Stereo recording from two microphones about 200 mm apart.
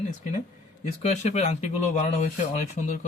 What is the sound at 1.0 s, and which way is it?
Speech, 35° left (ahead or behind).